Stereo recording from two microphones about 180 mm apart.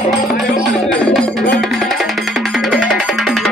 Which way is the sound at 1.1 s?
5° left (ahead or behind).